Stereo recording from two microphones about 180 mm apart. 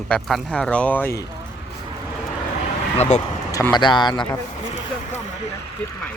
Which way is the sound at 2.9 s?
40° left (ahead or behind).